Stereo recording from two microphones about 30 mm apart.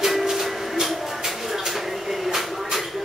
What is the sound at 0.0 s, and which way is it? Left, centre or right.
Music, centre.